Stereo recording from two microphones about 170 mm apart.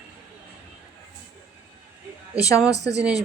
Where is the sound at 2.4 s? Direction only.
20° left (ahead or behind).